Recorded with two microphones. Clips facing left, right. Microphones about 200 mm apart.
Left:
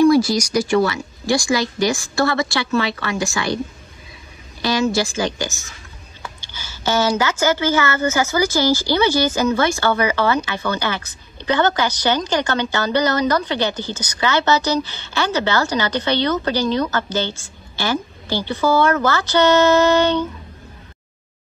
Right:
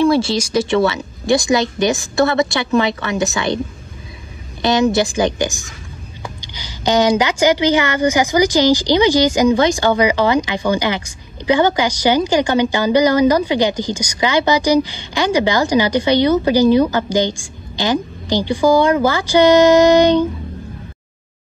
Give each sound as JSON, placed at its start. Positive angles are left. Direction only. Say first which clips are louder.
{"t": 0.0, "sound": "a woman's voice", "louder": "left 1 dB", "side_deg": -25}